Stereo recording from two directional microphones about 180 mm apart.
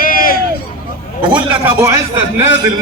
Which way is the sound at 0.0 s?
50° left (ahead or behind).